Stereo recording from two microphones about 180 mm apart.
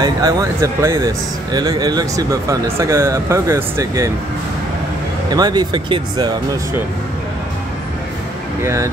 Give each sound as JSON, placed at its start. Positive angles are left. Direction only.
{"t": 0.0, "sound": "speech", "side_deg": -20}
{"t": 5.3, "sound": "speech", "side_deg": -20}